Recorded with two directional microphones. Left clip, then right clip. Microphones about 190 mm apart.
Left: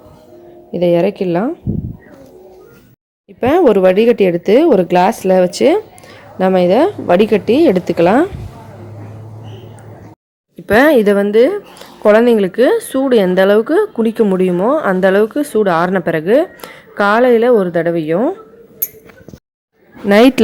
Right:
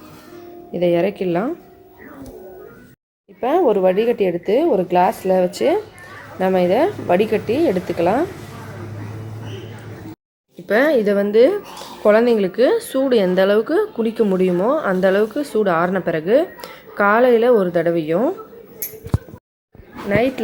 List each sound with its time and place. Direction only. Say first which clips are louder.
0.7 s a woman's voice: left 5 dB; 25° left (ahead or behind)
3.4 s speech: left 6 dB; 45° left (ahead or behind)
10.7 s a woman's voice: left 6 dB; 30° left (ahead or behind)
20.1 s speech: left 9 dB; 50° left (ahead or behind)